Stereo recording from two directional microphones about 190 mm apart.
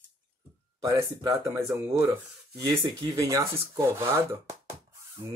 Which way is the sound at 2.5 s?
20° right (ahead or behind).